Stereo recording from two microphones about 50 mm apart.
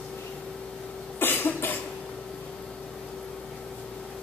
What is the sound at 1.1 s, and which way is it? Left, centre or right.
Cough, left.